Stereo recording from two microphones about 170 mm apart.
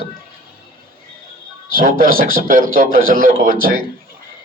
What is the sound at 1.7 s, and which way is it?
A man's voice, 55° right (ahead or behind).